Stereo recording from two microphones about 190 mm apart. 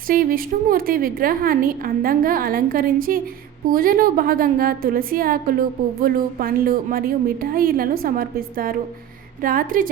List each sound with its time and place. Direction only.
0.1 s a woman's voice: 45° right (ahead or behind)